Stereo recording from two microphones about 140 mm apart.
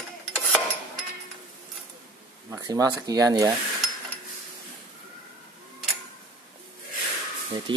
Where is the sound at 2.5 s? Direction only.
25° right (ahead or behind).